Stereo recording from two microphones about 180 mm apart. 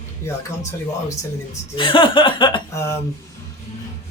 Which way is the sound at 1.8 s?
30° left (ahead or behind).